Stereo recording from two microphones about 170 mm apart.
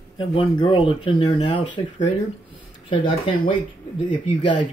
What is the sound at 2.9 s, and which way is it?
Speech, 30° left (ahead or behind).